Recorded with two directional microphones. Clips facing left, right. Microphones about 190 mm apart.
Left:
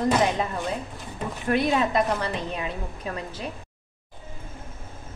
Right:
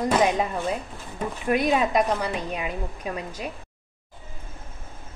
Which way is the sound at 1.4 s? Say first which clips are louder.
Right 1 dB; 15° right (ahead or behind).